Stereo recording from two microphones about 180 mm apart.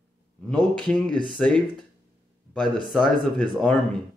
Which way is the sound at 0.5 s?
5° left (ahead or behind).